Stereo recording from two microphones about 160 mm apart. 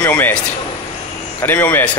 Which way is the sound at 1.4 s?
15° left (ahead or behind).